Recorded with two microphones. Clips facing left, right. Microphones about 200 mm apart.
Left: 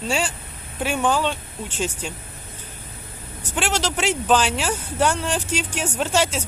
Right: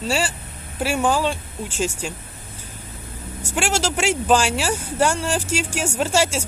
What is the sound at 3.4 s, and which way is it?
Speech, 10° right (ahead or behind).